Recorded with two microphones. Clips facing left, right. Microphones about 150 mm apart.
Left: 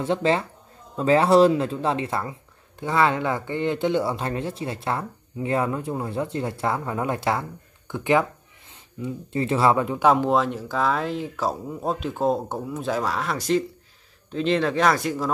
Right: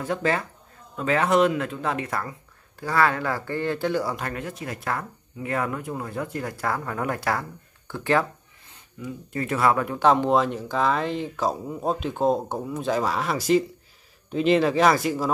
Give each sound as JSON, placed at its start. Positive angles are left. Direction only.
{"t": 0.0, "sound": "speech", "side_deg": 25}
{"t": 9.9, "sound": "speech", "side_deg": 5}